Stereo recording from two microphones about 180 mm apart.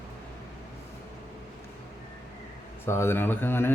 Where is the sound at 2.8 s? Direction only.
15° left (ahead or behind).